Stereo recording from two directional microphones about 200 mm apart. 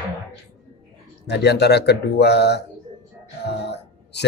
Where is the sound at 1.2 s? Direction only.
55° left (ahead or behind).